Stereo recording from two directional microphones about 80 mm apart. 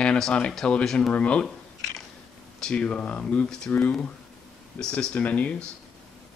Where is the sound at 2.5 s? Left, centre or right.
Centre.